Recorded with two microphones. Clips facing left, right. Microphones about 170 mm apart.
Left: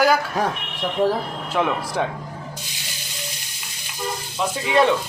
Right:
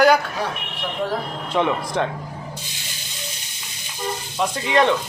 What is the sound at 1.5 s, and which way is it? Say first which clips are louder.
Speech: right 1 dB; 5° left (ahead or behind).